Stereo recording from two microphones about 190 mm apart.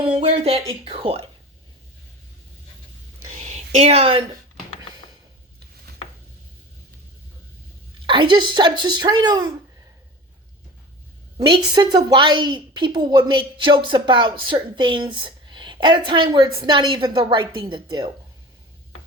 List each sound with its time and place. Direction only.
0.0 s speech: 30° right (ahead or behind)
3.2 s a sound: 35° right (ahead or behind)
8.0 s a woman's voice: 25° right (ahead or behind)
11.3 s a woman's voice: 25° right (ahead or behind)